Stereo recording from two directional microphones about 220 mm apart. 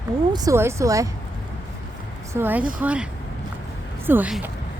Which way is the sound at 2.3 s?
10° right (ahead or behind).